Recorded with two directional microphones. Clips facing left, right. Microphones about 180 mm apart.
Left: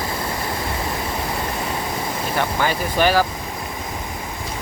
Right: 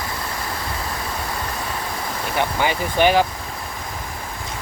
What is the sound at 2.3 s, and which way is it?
Speech, 15° right (ahead or behind).